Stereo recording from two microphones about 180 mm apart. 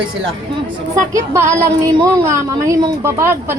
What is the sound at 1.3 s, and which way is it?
A woman's voice, 15° right (ahead or behind).